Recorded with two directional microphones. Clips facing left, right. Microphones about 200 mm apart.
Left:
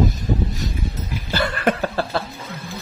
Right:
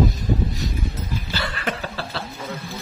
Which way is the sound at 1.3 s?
50° left (ahead or behind).